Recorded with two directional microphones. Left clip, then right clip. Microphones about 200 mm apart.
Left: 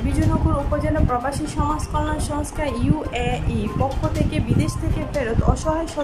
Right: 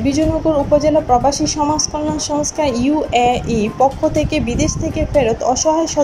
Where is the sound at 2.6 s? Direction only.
15° right (ahead or behind).